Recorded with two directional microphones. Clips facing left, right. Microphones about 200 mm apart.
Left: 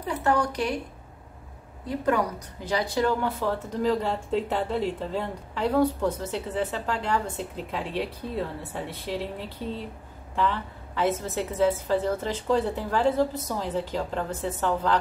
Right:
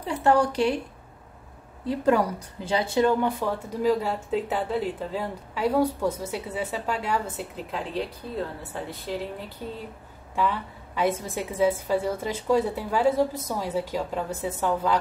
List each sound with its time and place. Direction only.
0.2 s speech: 30° right (ahead or behind)
1.9 s a woman's voice: 30° right (ahead or behind); by 9.1 s centre (ahead or behind)
10.3 s a woman's voice: 10° right (ahead or behind)